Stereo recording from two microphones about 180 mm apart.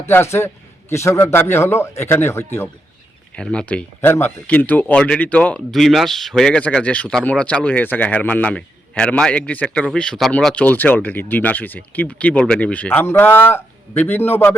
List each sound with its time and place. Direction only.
0.0 s speech: 15° left (ahead or behind)